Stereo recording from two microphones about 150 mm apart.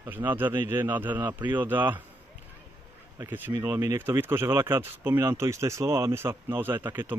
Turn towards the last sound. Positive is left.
turn(degrees=-15)  # may be behind; listen again after turning